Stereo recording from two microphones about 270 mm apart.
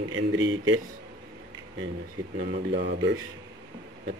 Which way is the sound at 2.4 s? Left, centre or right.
Right.